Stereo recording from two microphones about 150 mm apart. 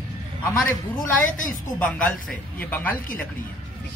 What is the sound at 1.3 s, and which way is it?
Speech, 60° left (ahead or behind).